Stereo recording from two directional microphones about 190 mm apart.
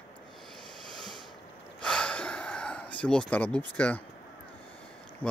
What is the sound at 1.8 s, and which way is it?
Gasp, 5° left (ahead or behind).